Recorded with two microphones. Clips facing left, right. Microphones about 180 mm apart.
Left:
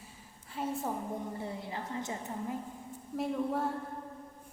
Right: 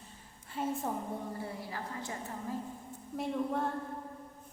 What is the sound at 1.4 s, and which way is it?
A woman's voice, 20° left (ahead or behind).